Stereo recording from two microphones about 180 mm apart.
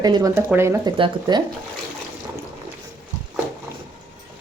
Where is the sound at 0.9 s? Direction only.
25° right (ahead or behind).